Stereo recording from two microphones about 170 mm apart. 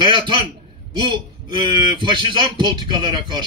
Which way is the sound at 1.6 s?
25° right (ahead or behind).